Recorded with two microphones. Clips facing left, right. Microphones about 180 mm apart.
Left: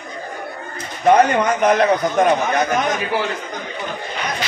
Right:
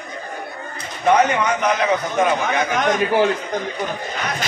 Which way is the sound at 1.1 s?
45° left (ahead or behind).